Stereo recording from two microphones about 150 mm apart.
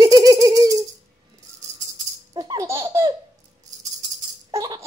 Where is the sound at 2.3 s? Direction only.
25° right (ahead or behind).